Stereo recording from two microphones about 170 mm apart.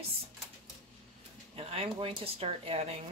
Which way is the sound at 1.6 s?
35° right (ahead or behind).